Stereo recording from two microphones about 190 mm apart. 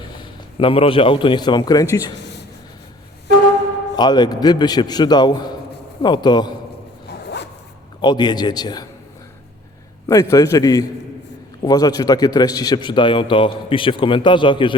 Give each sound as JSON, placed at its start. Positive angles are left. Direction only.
{"t": 0.6, "sound": "a man's voice", "side_deg": 30}
{"t": 3.9, "sound": "a man's voice", "side_deg": 20}
{"t": 8.0, "sound": "a man's voice", "side_deg": 20}
{"t": 10.1, "sound": "a man's voice", "side_deg": 15}